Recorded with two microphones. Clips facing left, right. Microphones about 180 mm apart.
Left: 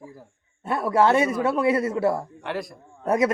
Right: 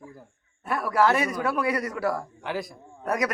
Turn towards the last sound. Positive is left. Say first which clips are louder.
# left 5 dB
turn(degrees=25)  # may be behind; listen again after turning